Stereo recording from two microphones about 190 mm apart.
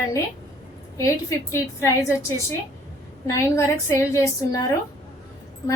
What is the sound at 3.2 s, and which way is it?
A woman's voice, 15° left (ahead or behind).